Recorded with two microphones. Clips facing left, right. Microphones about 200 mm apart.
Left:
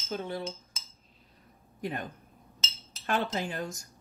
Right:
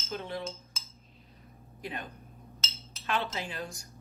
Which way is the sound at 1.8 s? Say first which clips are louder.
Left 5 dB; 45° left (ahead or behind).